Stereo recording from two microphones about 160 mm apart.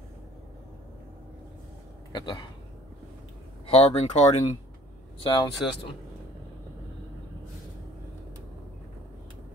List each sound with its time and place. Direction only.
2.1 s speech: 25° left (ahead or behind)
3.7 s speech: 40° left (ahead or behind)
5.2 s speech: 35° left (ahead or behind)